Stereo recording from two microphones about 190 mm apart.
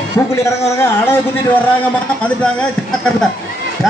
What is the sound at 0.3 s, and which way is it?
A man's voice, 15° left (ahead or behind).